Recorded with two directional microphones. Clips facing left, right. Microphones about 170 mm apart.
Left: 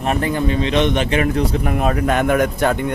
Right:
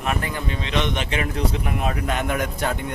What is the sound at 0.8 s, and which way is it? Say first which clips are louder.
Speech: left 8 dB; 55° left (ahead or behind).